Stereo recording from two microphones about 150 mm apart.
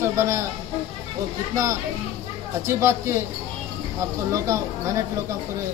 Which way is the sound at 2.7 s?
15° right (ahead or behind).